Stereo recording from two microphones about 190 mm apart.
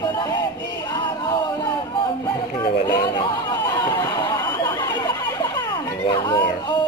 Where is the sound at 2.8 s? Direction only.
20° left (ahead or behind).